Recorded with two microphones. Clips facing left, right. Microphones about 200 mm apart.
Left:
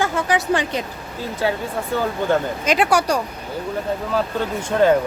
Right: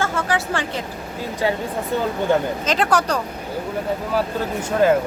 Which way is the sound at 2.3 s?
15° right (ahead or behind).